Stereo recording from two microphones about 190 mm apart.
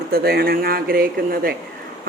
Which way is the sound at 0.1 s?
55° right (ahead or behind).